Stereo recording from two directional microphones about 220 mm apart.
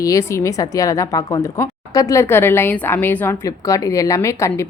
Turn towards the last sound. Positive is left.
turn(degrees=15)  # may be behind; listen again after turning